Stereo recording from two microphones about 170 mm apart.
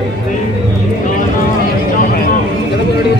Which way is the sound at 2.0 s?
60° left (ahead or behind).